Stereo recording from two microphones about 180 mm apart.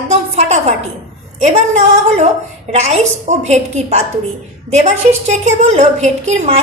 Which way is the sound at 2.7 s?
40° right (ahead or behind).